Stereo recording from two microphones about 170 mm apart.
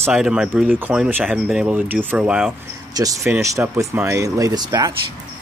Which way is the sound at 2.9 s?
20° right (ahead or behind).